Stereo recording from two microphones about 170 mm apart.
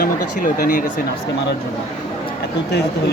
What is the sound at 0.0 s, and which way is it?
Speech, 50° left (ahead or behind).